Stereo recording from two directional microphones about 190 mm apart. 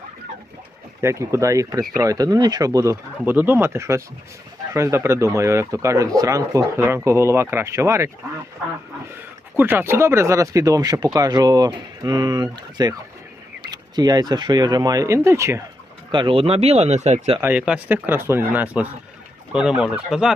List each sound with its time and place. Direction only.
1.0 s speech: 15° right (ahead or behind)
9.6 s speech: 10° right (ahead or behind)
16.1 s speech: 25° right (ahead or behind)
17.4 s speech: 5° right (ahead or behind)